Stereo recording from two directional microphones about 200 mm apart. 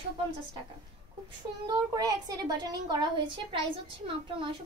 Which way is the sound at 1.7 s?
20° right (ahead or behind).